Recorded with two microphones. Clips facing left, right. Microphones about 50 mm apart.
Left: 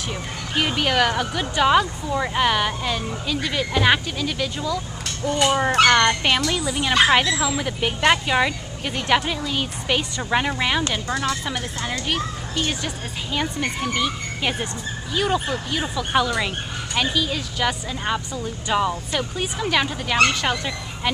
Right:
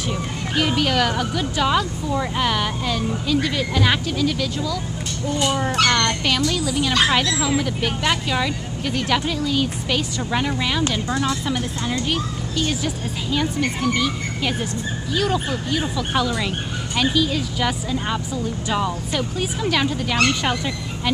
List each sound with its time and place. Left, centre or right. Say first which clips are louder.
0.1 s speech: right 2 dB; centre
5.8 s a child's voice: left 4 dB; left; by 21.1 s centre